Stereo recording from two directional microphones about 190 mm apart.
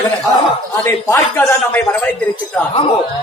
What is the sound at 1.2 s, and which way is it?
Speech, 5° left (ahead or behind).